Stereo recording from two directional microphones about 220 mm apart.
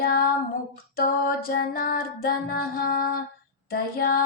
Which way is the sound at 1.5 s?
45° left (ahead or behind).